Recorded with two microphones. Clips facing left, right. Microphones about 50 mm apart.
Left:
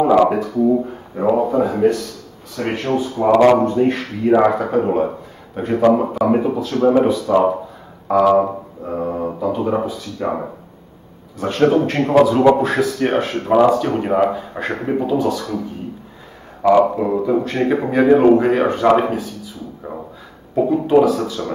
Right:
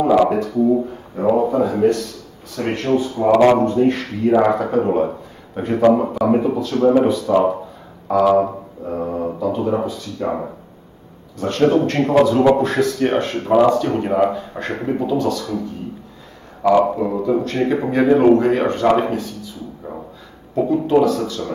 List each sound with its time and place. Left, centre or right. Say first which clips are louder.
0.0 s a man's voice: left 1 dB; centre
1.3 s a man's voice: even; centre
7.2 s a man's voice: left 1 dB; centre
16.6 s a man's voice: left 2 dB; centre
21.4 s speech: left 1 dB; left